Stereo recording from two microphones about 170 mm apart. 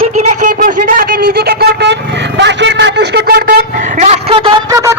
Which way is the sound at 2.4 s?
90° right.